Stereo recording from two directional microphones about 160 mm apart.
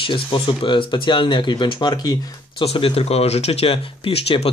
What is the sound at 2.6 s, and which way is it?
Speech, 35° left (ahead or behind).